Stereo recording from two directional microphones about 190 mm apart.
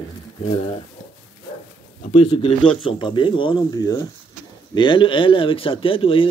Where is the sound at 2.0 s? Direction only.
35° left (ahead or behind).